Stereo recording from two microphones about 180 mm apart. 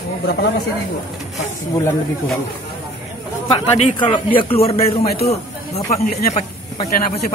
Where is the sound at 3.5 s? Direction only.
35° left (ahead or behind).